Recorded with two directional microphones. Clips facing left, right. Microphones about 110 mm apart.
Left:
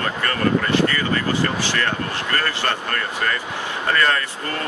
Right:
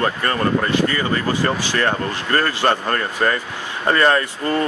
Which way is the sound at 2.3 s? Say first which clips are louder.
Right 6 dB; 30° right (ahead or behind).